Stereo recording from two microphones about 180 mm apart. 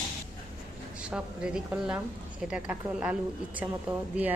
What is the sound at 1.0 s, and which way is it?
A woman's voice, 5° right (ahead or behind).